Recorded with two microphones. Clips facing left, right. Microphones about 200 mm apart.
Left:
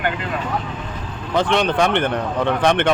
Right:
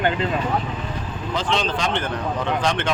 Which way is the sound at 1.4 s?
60° left (ahead or behind).